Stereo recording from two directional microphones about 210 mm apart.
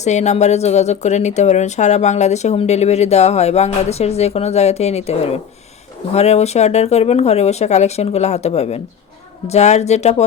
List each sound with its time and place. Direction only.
0.0 s speech: 35° left (ahead or behind)